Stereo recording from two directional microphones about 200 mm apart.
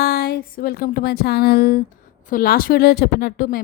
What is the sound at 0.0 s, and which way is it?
A woman's voice, 50° left (ahead or behind).